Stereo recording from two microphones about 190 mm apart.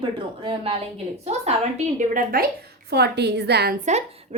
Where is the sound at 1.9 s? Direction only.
45° right (ahead or behind).